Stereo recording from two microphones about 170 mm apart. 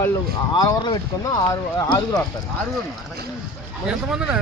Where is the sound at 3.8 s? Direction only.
5° right (ahead or behind).